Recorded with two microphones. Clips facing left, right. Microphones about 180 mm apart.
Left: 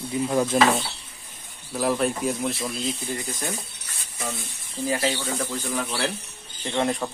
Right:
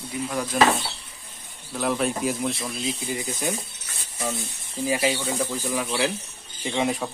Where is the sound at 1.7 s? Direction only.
Centre (ahead or behind).